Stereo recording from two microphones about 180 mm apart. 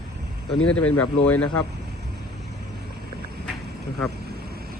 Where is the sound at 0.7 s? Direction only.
5° left (ahead or behind).